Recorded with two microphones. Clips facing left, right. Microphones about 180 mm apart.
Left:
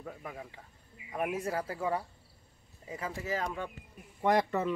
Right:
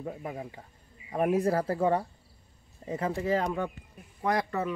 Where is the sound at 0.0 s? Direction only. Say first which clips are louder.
Right 6 dB; 30° right (ahead or behind).